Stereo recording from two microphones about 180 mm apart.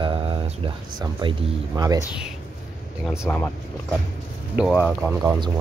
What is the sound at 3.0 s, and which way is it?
Speech, 10° left (ahead or behind).